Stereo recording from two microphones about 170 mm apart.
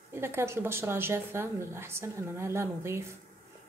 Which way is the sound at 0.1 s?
15° right (ahead or behind).